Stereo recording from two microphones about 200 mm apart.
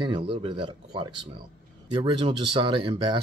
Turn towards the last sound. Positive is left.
turn(degrees=-25)  # may be behind; listen again after turning